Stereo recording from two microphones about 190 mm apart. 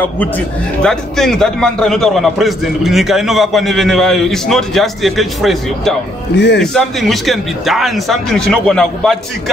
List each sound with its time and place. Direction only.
0.8 s a man's voice: centre (ahead or behind)
6.3 s a man's voice: 65° left (ahead or behind)
6.6 s a man's voice: centre (ahead or behind)